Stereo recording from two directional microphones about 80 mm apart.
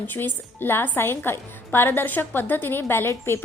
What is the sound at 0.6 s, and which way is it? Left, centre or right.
A woman's voice, left.